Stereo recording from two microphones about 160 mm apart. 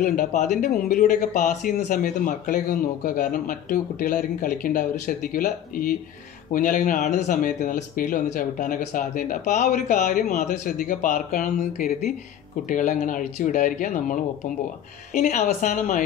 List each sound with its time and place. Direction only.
0.0 s a woman's voice: 55° left (ahead or behind)